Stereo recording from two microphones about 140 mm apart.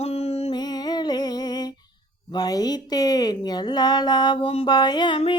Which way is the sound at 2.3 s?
30° left (ahead or behind).